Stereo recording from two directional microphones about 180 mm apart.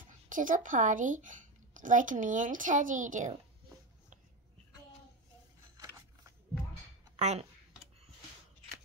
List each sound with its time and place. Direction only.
0.3 s a woman's voice: 45° right (ahead or behind)
7.2 s speech: 40° right (ahead or behind)